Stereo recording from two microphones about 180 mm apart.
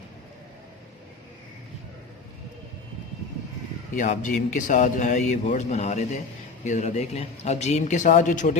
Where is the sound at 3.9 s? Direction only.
45° left (ahead or behind).